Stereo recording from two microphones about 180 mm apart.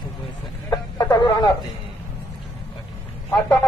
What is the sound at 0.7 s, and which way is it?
Chicken, 25° left (ahead or behind).